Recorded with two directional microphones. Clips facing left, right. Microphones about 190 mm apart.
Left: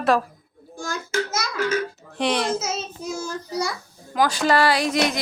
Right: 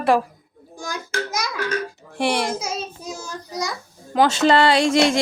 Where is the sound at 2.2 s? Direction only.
10° right (ahead or behind).